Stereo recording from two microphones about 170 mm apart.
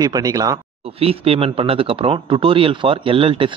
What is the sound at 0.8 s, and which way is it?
Speech, 35° right (ahead or behind).